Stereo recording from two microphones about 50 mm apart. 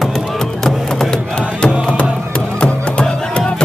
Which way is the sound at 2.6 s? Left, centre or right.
Left.